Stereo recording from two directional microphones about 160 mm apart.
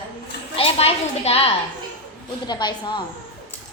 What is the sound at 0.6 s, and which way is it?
Speech, 40° left (ahead or behind).